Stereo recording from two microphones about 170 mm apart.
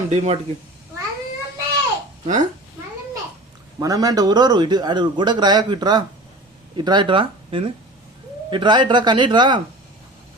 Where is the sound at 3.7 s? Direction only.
20° right (ahead or behind).